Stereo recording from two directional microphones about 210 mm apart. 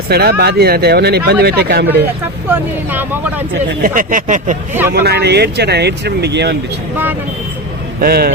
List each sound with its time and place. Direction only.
0.1 s speech: 50° right (ahead or behind)
2.5 s speech: 10° right (ahead or behind)
3.8 s speech: 40° right (ahead or behind)
4.9 s speech: 50° right (ahead or behind)
6.9 s speech: 10° right (ahead or behind)
8.0 s speech: 45° right (ahead or behind)